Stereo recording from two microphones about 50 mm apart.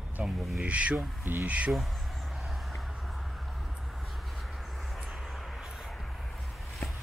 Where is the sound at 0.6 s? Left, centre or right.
Right.